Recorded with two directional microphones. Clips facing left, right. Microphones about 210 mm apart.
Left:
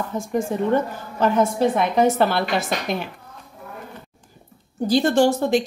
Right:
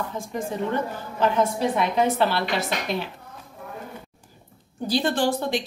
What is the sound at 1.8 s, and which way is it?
Speech, 45° left (ahead or behind).